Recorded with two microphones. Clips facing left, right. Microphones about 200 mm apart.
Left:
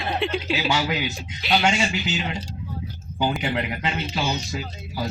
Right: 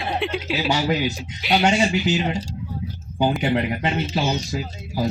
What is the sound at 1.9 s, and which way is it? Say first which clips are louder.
Speech: right 6 dB; 40° right (ahead or behind).